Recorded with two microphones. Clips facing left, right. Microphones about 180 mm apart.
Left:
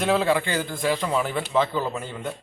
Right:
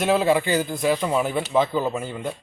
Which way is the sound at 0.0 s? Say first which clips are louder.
Right 2 dB; 20° right (ahead or behind).